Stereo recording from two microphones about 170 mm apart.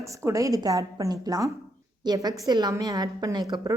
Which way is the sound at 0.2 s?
20° right (ahead or behind).